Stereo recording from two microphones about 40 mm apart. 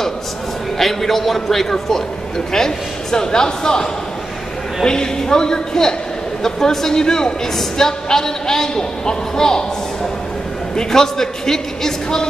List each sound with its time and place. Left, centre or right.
0.7 s a woman's voice: centre
10.8 s a woman's voice: centre